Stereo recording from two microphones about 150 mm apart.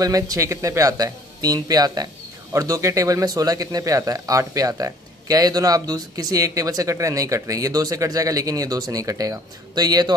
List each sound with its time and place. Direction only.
0.0 s speech: 25° right (ahead or behind)